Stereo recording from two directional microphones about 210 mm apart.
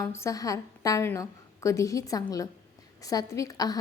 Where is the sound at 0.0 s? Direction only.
15° left (ahead or behind).